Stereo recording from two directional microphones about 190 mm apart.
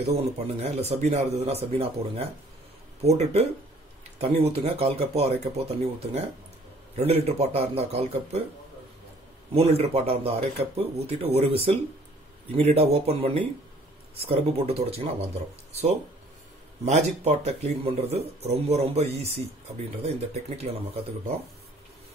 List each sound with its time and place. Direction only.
0.0 s speech: 35° right (ahead or behind)
9.5 s speech: 30° right (ahead or behind)
16.8 s speech: 35° right (ahead or behind)